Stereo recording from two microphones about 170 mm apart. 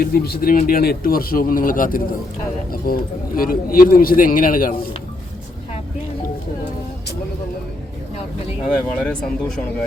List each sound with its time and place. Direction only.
0.0 s speech: 65° left (ahead or behind)
8.7 s speech: 5° left (ahead or behind)